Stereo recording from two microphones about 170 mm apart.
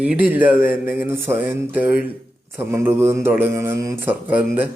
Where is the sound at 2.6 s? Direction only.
15° right (ahead or behind).